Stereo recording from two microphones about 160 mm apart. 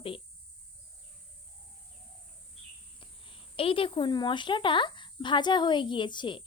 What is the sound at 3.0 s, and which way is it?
Speech, 35° left (ahead or behind).